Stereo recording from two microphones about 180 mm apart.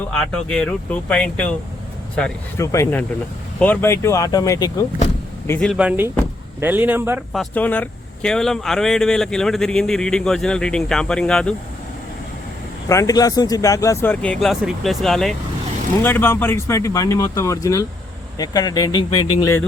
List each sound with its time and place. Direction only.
0.2 s speech: 5° left (ahead or behind)
5.5 s speech: 5° left (ahead or behind)
5.7 s speech: 5° right (ahead or behind)
7.3 s speech: 10° left (ahead or behind)
12.9 s speech: 20° left (ahead or behind)